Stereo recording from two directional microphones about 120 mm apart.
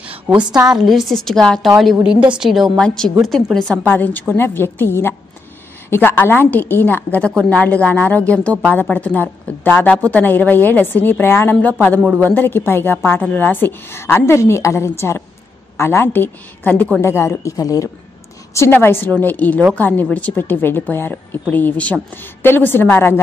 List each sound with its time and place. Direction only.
0.7 s a woman's voice: 5° right (ahead or behind)
3.8 s a woman's voice: 15° left (ahead or behind)